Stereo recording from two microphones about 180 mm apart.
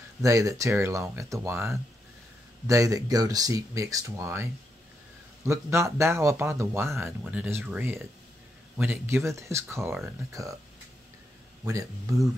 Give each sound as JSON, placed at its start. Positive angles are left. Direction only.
{"t": 0.2, "sound": "a man's voice", "side_deg": -20}
{"t": 11.6, "sound": "speech", "side_deg": -20}